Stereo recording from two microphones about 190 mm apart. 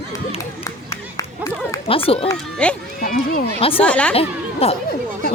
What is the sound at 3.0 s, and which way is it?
Speech, 45° left (ahead or behind).